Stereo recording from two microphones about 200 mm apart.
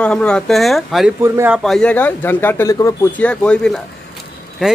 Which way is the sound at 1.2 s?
10° right (ahead or behind).